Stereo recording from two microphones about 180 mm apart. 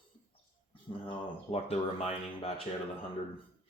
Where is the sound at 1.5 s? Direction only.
35° left (ahead or behind).